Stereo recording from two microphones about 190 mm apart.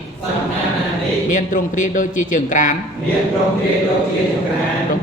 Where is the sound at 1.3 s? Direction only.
45° left (ahead or behind).